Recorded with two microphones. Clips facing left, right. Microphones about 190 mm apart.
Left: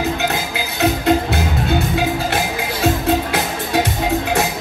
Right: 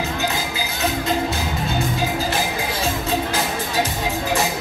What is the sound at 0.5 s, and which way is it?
Music, 65° left (ahead or behind).